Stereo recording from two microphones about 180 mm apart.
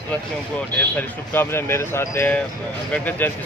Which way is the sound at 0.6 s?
10° left (ahead or behind).